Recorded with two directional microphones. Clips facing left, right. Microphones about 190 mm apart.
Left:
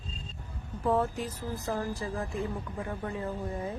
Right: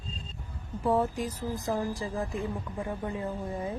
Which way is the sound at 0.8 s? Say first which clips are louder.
Right 1 dB; 10° right (ahead or behind).